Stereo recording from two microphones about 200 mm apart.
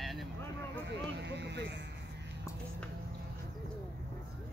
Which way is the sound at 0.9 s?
60° right (ahead or behind).